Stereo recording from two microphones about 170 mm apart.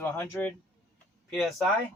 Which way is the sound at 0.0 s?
15° left (ahead or behind).